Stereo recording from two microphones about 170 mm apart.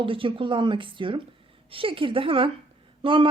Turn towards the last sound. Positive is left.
turn(degrees=-30)  # may be behind; listen again after turning